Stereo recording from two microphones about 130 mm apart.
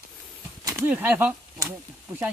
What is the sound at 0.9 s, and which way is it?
Speech, 10° right (ahead or behind).